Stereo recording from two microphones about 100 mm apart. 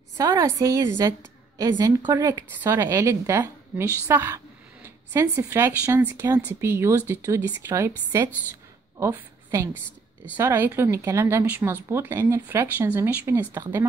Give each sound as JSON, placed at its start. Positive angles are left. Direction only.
{"t": 0.2, "sound": "a woman's voice", "side_deg": -35}
{"t": 2.3, "sound": "speech", "side_deg": -20}
{"t": 8.9, "sound": "a sound", "side_deg": -25}
{"t": 10.3, "sound": "speech", "side_deg": -20}